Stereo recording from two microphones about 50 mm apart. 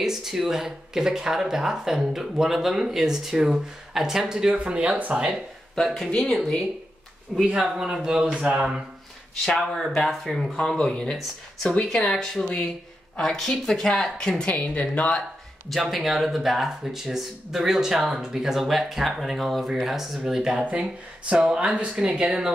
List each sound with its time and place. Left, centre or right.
0.0 s speech: centre; by 5.3 s right
5.8 s speech: centre
7.4 s speech: centre
8.4 s speech: right
9.9 s a woman's voice: centre
14.4 s speech: left
15.7 s speech: centre